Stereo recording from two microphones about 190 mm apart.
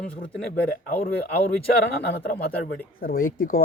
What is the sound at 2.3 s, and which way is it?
Speech, 50° left (ahead or behind).